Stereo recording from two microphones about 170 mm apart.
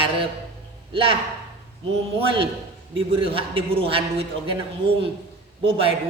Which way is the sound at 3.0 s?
30° right (ahead or behind).